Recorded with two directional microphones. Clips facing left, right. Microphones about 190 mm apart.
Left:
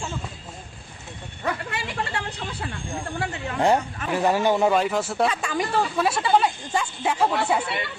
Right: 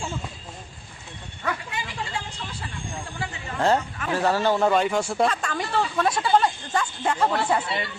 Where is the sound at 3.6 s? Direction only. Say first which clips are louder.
Left 1 dB; 15° left (ahead or behind).